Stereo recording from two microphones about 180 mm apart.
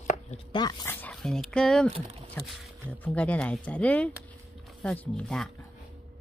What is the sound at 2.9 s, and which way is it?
Speech, 10° left (ahead or behind).